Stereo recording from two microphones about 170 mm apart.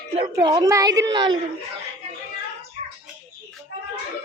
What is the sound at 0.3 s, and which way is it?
A woman's voice, 20° right (ahead or behind).